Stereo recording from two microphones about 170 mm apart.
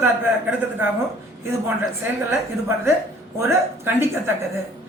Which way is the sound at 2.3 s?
15° right (ahead or behind).